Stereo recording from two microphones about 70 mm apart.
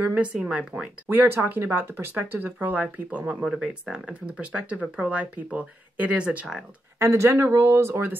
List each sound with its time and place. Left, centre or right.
0.2 s speech: centre
1.0 s speech: right
3.4 s speech: centre
7.0 s speech: right